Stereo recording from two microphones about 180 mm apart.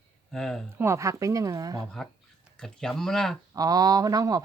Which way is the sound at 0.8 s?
15° right (ahead or behind).